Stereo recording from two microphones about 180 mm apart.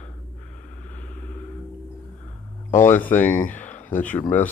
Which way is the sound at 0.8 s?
10° left (ahead or behind).